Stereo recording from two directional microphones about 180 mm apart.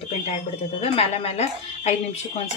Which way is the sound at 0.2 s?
35° left (ahead or behind).